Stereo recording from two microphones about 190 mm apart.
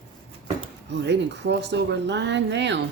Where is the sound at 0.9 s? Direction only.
65° right (ahead or behind).